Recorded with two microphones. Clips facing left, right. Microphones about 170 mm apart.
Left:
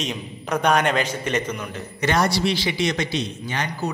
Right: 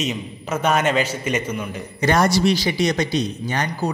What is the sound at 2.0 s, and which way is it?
Speech, 45° right (ahead or behind).